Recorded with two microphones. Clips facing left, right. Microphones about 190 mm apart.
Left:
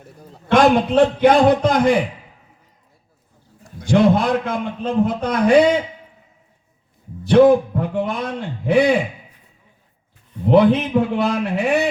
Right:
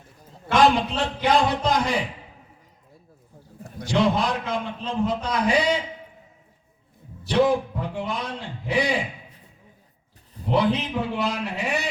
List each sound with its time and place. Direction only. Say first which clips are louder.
0.5 s a man's voice: left 6 dB; 55° left (ahead or behind)
3.8 s a man's voice: left 7 dB; 55° left (ahead or behind)
7.3 s a man's voice: left 9 dB; 55° left (ahead or behind)
10.5 s a man's voice: left 9 dB; 55° left (ahead or behind)